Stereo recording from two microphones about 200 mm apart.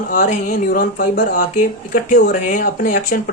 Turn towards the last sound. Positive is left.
turn(degrees=40)  # may be behind; listen again after turning